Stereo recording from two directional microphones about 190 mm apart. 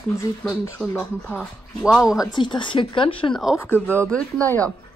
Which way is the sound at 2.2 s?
25° left (ahead or behind).